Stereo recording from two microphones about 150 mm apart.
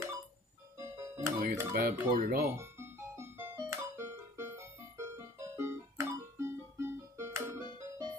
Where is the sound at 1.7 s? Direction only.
90° right.